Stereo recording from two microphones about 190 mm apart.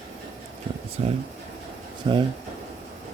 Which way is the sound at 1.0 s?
30° right (ahead or behind).